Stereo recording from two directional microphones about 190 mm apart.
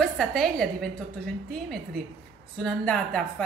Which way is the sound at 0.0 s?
Centre (ahead or behind).